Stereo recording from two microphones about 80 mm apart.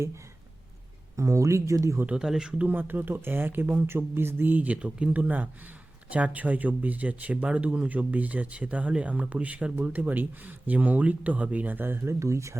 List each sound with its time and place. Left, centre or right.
1.1 s speech: right
2.0 s speech: centre
2.6 s speech: right